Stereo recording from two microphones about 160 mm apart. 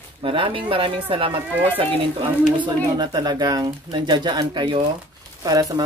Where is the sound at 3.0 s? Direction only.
25° right (ahead or behind).